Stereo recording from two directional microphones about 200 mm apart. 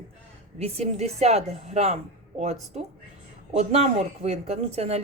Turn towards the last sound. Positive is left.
turn(degrees=-30)  # may be behind; listen again after turning